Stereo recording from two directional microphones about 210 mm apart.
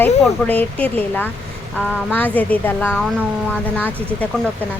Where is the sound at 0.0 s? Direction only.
5° left (ahead or behind).